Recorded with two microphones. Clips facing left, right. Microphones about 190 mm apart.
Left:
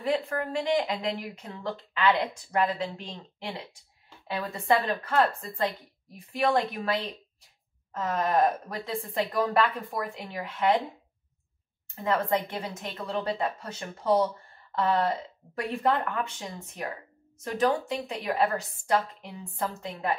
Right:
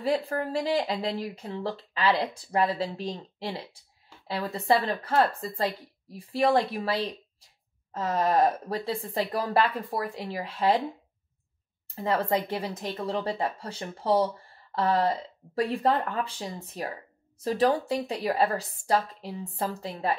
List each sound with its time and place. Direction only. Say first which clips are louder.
0.0 s speech: right 1 dB; 30° right (ahead or behind)
11.9 s speech: right 1 dB; 35° right (ahead or behind)